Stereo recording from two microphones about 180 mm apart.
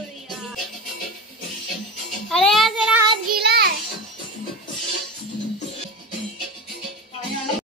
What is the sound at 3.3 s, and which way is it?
Child singing, 60° right (ahead or behind).